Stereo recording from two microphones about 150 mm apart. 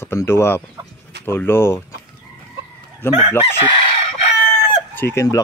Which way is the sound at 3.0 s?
15° left (ahead or behind).